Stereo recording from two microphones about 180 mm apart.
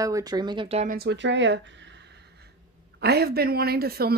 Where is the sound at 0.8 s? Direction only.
50° right (ahead or behind).